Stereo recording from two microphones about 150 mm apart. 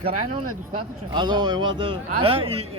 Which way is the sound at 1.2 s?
30° right (ahead or behind).